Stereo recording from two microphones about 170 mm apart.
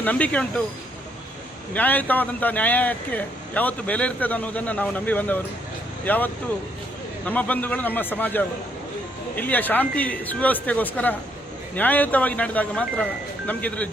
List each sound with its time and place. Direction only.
0.0 s speech: 10° left (ahead or behind)
1.7 s speech: 10° left (ahead or behind)